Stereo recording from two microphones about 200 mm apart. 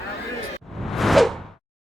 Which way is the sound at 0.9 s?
Centre (ahead or behind).